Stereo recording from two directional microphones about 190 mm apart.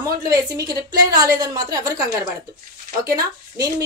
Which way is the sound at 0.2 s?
20° right (ahead or behind).